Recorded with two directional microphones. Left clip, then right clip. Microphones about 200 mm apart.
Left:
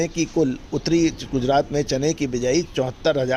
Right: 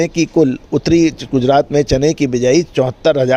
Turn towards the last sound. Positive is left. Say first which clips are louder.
# right 8 dB
turn(degrees=-40)  # may be behind; listen again after turning